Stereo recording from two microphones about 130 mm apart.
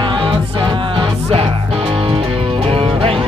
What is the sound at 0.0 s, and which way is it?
Music, 40° right (ahead or behind).